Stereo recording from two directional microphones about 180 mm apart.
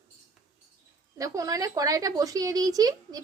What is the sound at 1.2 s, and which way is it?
A woman's voice, 20° right (ahead or behind).